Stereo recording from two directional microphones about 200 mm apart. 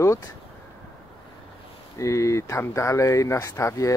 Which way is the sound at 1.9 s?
15° left (ahead or behind).